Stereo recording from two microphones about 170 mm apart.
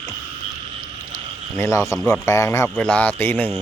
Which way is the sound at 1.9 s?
5° left (ahead or behind).